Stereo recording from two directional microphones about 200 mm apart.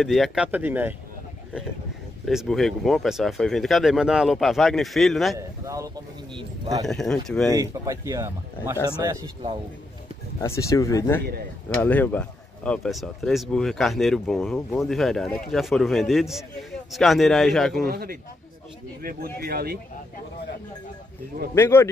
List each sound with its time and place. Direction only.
0.0 s speech: centre (ahead or behind)
2.2 s speech: centre (ahead or behind)
5.7 s speech: 15° right (ahead or behind)
6.9 s speech: centre (ahead or behind)
7.5 s speech: 15° right (ahead or behind)
8.7 s speech: 10° left (ahead or behind)
9.0 s speech: 20° right (ahead or behind)
10.4 s speech: 15° left (ahead or behind)
17.8 s speech: 50° right (ahead or behind)
21.5 s speech: 10° left (ahead or behind)